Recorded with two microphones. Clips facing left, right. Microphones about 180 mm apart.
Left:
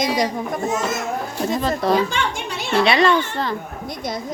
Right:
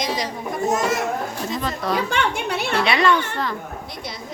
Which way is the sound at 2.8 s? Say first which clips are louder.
Left 4 dB; 30° left (ahead or behind).